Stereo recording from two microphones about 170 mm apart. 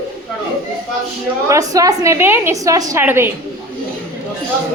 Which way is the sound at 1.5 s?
20° right (ahead or behind).